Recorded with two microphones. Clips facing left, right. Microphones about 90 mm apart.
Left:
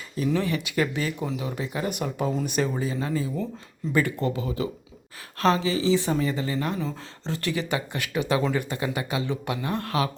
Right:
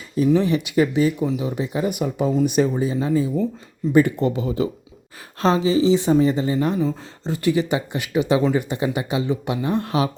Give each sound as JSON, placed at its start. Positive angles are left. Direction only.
{"t": 0.3, "sound": "speech", "side_deg": -20}
{"t": 1.9, "sound": "speech", "side_deg": -10}
{"t": 6.7, "sound": "speech", "side_deg": -10}